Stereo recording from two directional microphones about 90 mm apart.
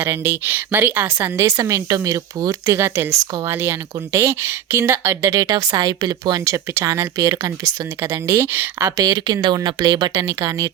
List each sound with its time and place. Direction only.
0.0 s a woman's voice: 25° right (ahead or behind)
1.4 s speech: 35° right (ahead or behind)
9.0 s speech: 50° right (ahead or behind)